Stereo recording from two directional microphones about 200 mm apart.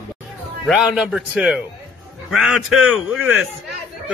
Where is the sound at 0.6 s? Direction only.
Centre (ahead or behind).